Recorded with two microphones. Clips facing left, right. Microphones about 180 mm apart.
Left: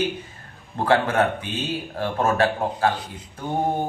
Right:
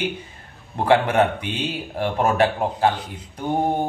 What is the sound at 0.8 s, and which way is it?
Mantra, 15° right (ahead or behind).